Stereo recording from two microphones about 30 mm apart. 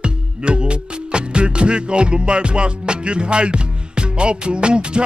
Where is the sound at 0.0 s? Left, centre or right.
Right.